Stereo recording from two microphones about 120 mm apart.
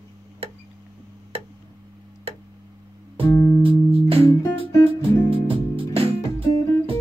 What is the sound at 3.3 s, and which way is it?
Music, 25° left (ahead or behind).